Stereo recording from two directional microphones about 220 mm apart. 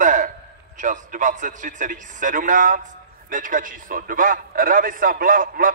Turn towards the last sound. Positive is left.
turn(degrees=-40)  # may be behind; listen again after turning